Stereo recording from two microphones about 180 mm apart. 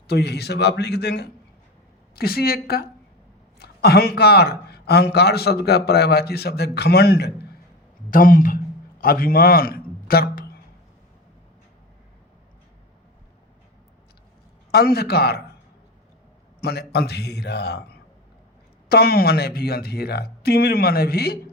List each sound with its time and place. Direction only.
0.1 s a man's voice: 65° left (ahead or behind)
8.1 s a man's voice: 50° left (ahead or behind)
14.7 s a man's voice: 60° left (ahead or behind)
16.6 s a man's voice: 60° left (ahead or behind)
18.9 s a man's voice: 60° left (ahead or behind)